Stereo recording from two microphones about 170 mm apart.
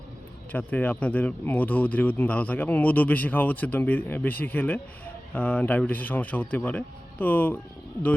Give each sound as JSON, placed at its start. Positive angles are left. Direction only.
{"t": 0.5, "sound": "speech", "side_deg": 10}